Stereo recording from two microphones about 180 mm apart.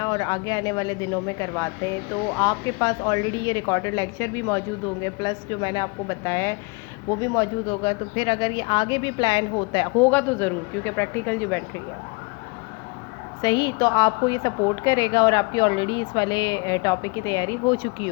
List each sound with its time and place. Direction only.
0.0 s speech: 20° left (ahead or behind)
7.2 s speech: 25° left (ahead or behind)
10.0 s speech: 10° left (ahead or behind)
13.4 s speech: 25° left (ahead or behind)